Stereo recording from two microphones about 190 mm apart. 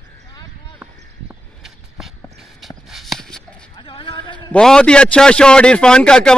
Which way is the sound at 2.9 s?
Centre (ahead or behind).